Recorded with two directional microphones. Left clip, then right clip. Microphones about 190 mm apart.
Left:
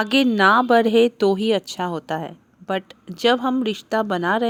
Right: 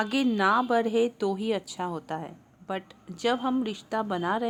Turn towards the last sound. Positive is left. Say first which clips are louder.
# left 8 dB
turn(degrees=30)  # may be behind; listen again after turning